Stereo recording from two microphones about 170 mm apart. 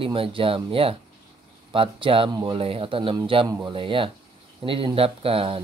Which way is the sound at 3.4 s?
20° right (ahead or behind).